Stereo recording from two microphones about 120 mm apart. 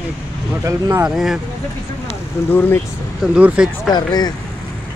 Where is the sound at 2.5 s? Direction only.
15° left (ahead or behind).